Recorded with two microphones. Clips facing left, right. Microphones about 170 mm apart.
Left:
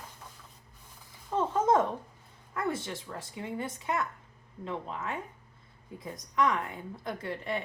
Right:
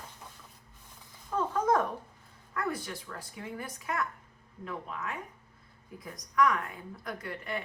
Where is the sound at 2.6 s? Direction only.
25° left (ahead or behind).